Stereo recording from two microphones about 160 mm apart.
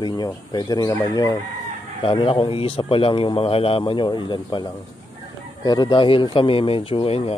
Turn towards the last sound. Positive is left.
turn(degrees=35)  # may be behind; listen again after turning